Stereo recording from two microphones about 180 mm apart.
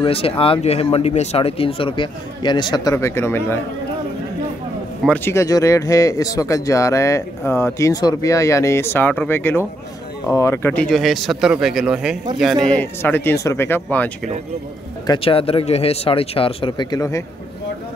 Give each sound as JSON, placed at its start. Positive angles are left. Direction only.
{"t": 0.0, "sound": "speech", "side_deg": 30}
{"t": 5.0, "sound": "speech", "side_deg": 10}
{"t": 12.6, "sound": "speech", "side_deg": 10}
{"t": 15.0, "sound": "speech", "side_deg": 30}